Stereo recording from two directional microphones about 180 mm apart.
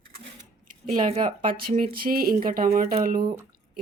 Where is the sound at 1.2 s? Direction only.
50° right (ahead or behind).